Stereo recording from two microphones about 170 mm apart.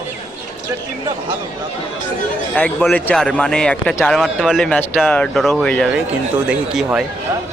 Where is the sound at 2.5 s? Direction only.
5° left (ahead or behind).